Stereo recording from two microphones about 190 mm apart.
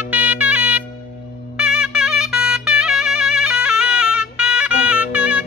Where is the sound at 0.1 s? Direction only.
10° right (ahead or behind).